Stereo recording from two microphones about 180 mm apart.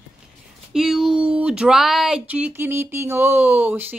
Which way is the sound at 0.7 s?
Centre (ahead or behind).